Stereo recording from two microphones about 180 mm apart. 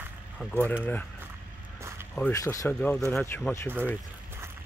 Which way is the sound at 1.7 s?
15° right (ahead or behind).